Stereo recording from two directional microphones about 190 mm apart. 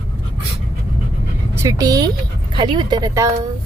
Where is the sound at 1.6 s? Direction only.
15° right (ahead or behind).